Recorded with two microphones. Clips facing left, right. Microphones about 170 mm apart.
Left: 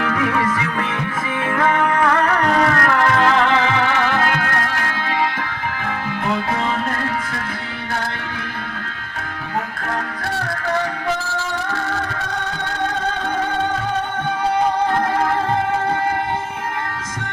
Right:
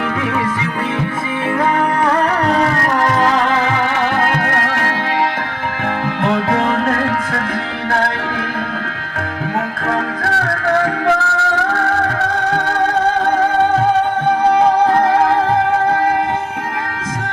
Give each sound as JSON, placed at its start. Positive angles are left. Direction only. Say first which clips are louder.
{"t": 1.5, "sound": "music", "louder": "right 1 dB", "side_deg": -30}
{"t": 4.2, "sound": "music", "louder": "right 3 dB", "side_deg": -60}
{"t": 6.2, "sound": "music", "louder": "right 6 dB", "side_deg": -75}
{"t": 10.2, "sound": "music", "louder": "right 5 dB", "side_deg": -80}